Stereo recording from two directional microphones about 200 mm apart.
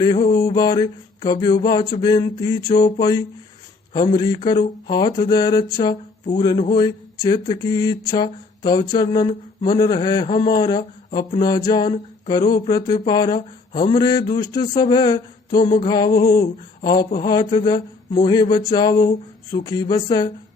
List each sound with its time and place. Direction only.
0.0 s speech: 20° left (ahead or behind)